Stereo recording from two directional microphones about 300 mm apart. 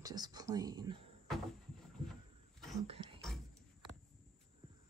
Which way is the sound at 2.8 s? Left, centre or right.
Centre.